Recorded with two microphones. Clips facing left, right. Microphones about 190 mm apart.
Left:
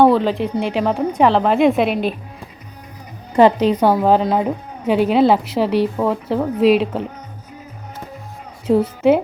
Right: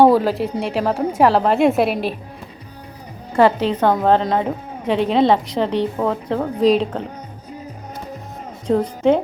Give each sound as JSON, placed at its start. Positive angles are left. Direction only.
{"t": 0.0, "sound": "a woman's voice", "side_deg": -10}
{"t": 3.3, "sound": "a woman's voice", "side_deg": 15}
{"t": 8.6, "sound": "a woman's voice", "side_deg": 5}